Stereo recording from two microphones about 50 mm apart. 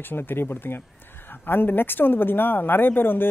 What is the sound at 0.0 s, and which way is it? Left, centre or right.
Speech, left.